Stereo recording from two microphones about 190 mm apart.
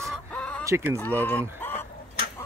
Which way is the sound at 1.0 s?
10° left (ahead or behind).